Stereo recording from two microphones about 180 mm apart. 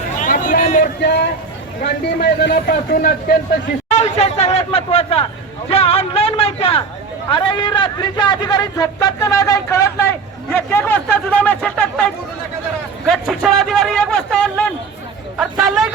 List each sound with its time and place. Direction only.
0.2 s a sound: 50° left (ahead or behind)
1.0 s a man's voice: 65° left (ahead or behind)
3.8 s a man's voice: 40° left (ahead or behind); by 15.9 s centre (ahead or behind)